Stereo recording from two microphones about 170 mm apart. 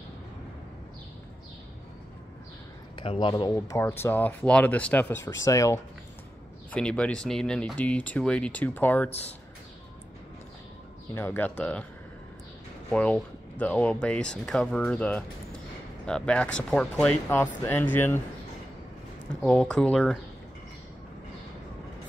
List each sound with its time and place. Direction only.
3.0 s speech: 30° left (ahead or behind)
3.5 s speech: 15° left (ahead or behind)
6.7 s speech: 5° left (ahead or behind)
11.1 s speech: 10° left (ahead or behind)
12.9 s speech: 5° left (ahead or behind)
19.4 s speech: 5° left (ahead or behind)